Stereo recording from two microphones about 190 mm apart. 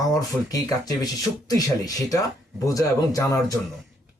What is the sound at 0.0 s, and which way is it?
Speech, 20° left (ahead or behind).